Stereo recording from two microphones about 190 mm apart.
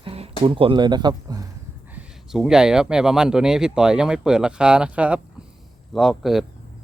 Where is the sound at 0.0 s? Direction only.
30° right (ahead or behind).